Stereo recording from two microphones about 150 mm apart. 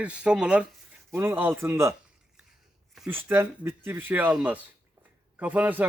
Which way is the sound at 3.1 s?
15° right (ahead or behind).